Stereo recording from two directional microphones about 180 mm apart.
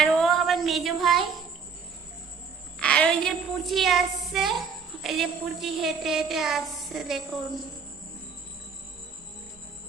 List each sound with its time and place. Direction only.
0.0 s music: centre (ahead or behind)
2.7 s a sound: 5° left (ahead or behind)
5.0 s a woman's voice: centre (ahead or behind)